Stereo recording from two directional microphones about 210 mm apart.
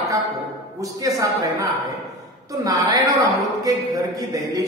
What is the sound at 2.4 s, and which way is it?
A man's voice, 15° right (ahead or behind).